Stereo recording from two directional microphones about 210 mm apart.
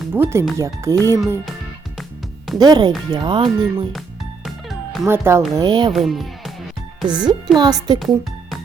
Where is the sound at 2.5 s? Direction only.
20° right (ahead or behind).